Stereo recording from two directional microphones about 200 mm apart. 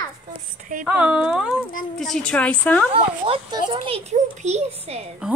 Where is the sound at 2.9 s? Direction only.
25° right (ahead or behind).